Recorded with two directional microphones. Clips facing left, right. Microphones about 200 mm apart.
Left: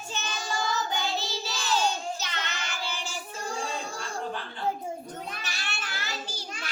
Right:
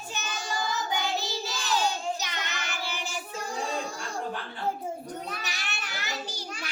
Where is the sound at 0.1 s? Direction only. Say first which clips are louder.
Left 1 dB; 15° right (ahead or behind).